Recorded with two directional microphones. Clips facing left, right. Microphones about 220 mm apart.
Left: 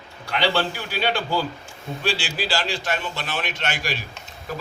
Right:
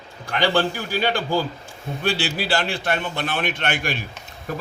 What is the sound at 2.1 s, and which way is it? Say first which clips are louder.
A man's voice: right 3 dB; 60° right (ahead or behind).